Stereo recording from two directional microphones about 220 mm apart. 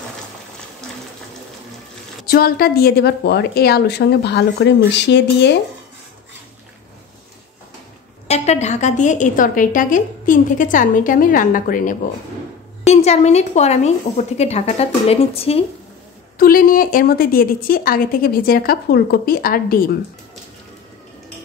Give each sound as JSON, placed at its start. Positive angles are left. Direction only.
{"t": 2.2, "sound": "a woman's voice", "side_deg": 45}
{"t": 8.3, "sound": "a woman's voice", "side_deg": 30}
{"t": 16.3, "sound": "a woman's voice", "side_deg": 40}